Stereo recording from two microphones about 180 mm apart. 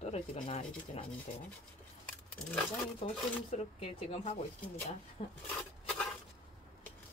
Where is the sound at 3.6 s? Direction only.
35° left (ahead or behind).